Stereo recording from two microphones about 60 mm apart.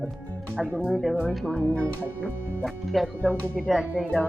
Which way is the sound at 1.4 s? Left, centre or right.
Left.